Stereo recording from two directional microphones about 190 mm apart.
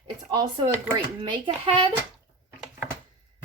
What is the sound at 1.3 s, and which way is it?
Speech, 30° right (ahead or behind).